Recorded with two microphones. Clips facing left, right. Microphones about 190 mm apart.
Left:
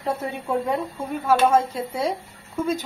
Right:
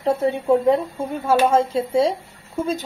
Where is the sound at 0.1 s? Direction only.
30° right (ahead or behind).